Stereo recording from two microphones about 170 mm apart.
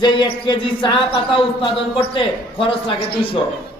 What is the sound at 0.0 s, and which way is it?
Speech, 25° left (ahead or behind).